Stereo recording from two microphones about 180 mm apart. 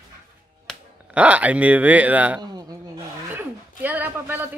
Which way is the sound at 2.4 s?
25° right (ahead or behind).